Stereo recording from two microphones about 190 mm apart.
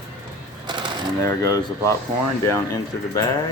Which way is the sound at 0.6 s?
25° right (ahead or behind).